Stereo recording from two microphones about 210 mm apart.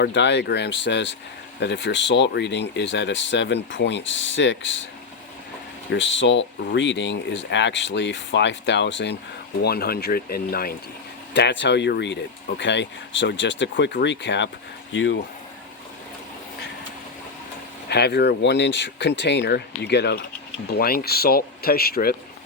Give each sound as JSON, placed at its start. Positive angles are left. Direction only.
{"t": 0.0, "sound": "speech", "side_deg": 55}
{"t": 5.9, "sound": "speech", "side_deg": 60}
{"t": 17.8, "sound": "speech", "side_deg": 50}